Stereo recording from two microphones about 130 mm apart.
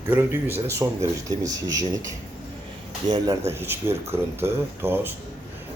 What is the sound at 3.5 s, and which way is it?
Speech, 20° right (ahead or behind).